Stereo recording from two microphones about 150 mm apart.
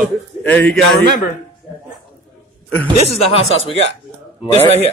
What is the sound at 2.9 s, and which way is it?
A man's voice, 40° left (ahead or behind).